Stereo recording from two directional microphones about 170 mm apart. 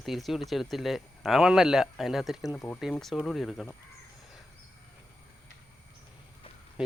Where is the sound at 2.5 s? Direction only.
15° left (ahead or behind).